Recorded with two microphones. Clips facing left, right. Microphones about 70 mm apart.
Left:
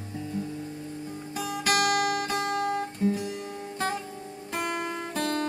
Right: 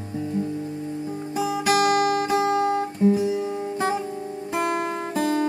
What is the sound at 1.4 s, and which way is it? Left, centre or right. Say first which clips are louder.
Guitar: right 6 dB; centre.